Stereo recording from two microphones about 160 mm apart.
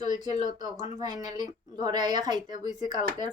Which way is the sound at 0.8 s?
25° right (ahead or behind).